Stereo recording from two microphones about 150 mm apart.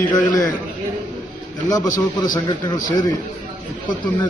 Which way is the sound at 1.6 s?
25° left (ahead or behind).